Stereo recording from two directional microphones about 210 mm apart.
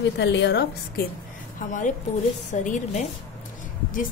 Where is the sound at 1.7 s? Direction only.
35° left (ahead or behind).